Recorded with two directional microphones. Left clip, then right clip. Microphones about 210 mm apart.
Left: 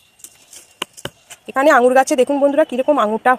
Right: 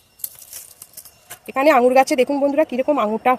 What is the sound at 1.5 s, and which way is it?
Speech, 10° left (ahead or behind).